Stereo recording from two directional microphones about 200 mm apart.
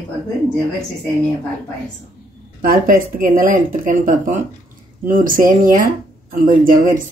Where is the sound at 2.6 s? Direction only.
45° right (ahead or behind).